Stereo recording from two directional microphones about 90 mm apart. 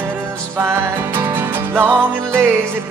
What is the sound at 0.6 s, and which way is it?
Music, 25° right (ahead or behind).